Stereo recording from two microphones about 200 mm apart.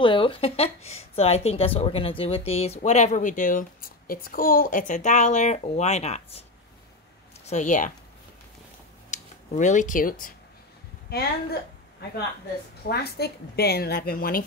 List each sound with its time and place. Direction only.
0.0 s speech: 25° left (ahead or behind)
7.4 s speech: 40° left (ahead or behind)
9.1 s speech: 35° left (ahead or behind)
12.8 s a woman's voice: 50° left (ahead or behind)